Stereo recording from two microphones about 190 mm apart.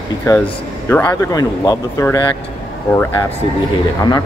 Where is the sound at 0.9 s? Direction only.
10° left (ahead or behind).